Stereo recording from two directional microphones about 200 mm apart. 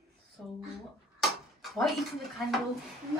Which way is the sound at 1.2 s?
Centre (ahead or behind).